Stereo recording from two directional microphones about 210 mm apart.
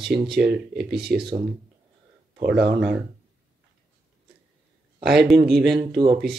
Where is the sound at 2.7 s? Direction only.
5° right (ahead or behind).